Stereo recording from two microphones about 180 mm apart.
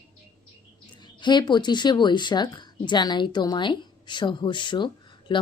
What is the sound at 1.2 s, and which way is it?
A woman's voice, 25° left (ahead or behind).